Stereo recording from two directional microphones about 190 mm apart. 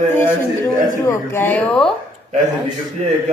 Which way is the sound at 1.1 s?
15° left (ahead or behind).